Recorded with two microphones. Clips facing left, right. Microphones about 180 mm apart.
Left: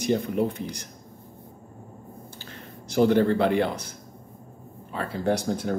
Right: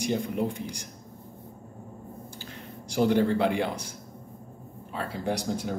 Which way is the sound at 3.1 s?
15° right (ahead or behind).